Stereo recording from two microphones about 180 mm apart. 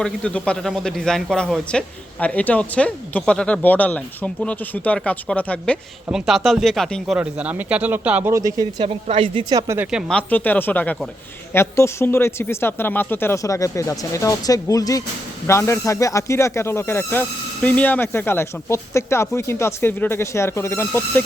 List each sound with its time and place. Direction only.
0.0 s speech: 5° left (ahead or behind); by 8.9 s 20° right (ahead or behind)
8.9 s speech: 30° right (ahead or behind); by 10.0 s 10° right (ahead or behind)
10.1 s speech: 10° left (ahead or behind)